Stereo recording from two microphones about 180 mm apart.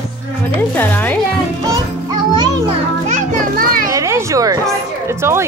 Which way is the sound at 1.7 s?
20° right (ahead or behind).